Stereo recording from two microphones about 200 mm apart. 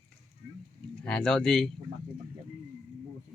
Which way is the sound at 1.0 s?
5° left (ahead or behind).